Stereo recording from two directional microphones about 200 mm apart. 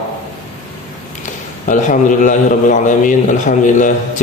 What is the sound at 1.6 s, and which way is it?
A man's voice, 40° left (ahead or behind).